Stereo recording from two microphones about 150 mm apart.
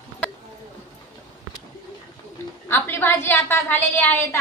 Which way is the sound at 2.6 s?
15° left (ahead or behind).